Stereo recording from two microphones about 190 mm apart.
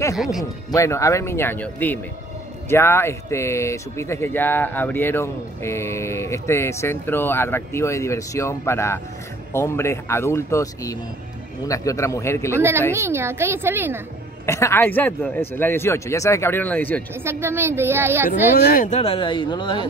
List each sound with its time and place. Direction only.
0.2 s speech: centre (ahead or behind)
0.7 s speech: 15° left (ahead or behind)
12.5 s a woman's voice: 10° right (ahead or behind)
14.4 s speech: 15° left (ahead or behind)
17.1 s a woman's voice: 10° right (ahead or behind)
18.6 s speech: 50° left (ahead or behind); by 19.9 s 25° left (ahead or behind)